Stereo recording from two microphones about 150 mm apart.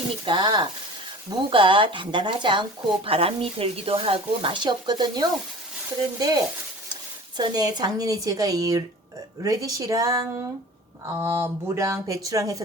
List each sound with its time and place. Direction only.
0.3 s speech: 30° right (ahead or behind)